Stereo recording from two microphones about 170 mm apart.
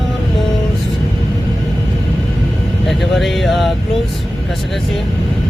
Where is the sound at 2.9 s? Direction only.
Centre (ahead or behind).